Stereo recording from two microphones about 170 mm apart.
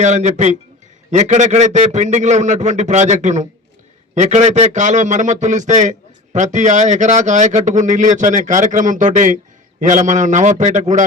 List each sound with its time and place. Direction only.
0.0 s a man's voice: 45° right (ahead or behind)